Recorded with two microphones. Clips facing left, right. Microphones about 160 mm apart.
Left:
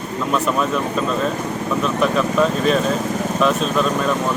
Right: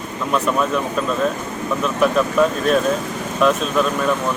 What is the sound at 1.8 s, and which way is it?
Speech, 5° right (ahead or behind).